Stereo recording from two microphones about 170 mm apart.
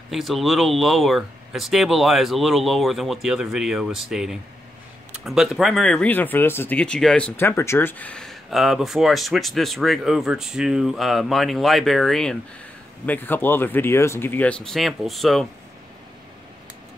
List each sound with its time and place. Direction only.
0.1 s speech: centre (ahead or behind)